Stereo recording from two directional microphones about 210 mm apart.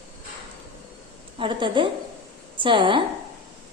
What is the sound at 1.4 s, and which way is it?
A woman's voice, 25° right (ahead or behind).